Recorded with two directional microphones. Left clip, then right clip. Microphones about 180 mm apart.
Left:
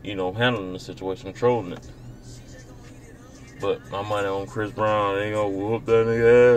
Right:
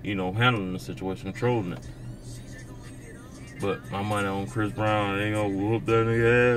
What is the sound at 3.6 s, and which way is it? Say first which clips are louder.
Speech: left 4 dB; 5° right (ahead or behind).